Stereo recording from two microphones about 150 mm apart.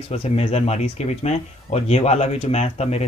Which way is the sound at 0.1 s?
45° left (ahead or behind).